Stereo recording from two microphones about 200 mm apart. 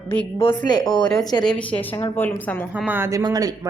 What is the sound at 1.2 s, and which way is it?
Speech, 20° left (ahead or behind).